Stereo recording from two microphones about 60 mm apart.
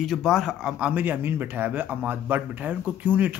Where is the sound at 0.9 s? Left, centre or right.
Right.